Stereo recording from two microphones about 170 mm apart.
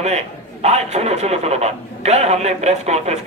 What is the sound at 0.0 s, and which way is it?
A man's voice, 40° right (ahead or behind).